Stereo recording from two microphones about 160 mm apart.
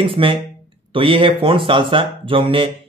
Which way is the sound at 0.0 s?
35° right (ahead or behind).